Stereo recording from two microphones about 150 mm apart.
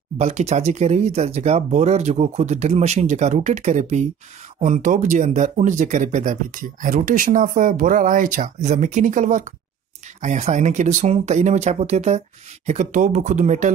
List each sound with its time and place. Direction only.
0.2 s speech: 50° right (ahead or behind)